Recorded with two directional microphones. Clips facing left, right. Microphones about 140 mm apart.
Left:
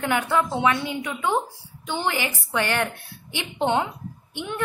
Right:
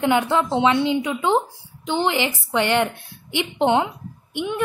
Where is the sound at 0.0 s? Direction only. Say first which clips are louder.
Right 4 dB; 20° right (ahead or behind).